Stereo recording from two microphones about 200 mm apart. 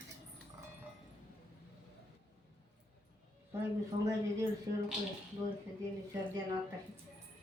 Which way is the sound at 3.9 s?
25° right (ahead or behind).